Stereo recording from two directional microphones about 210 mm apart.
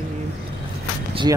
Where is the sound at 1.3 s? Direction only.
20° right (ahead or behind).